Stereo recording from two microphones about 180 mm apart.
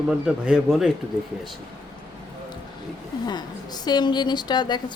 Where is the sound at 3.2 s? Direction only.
20° left (ahead or behind).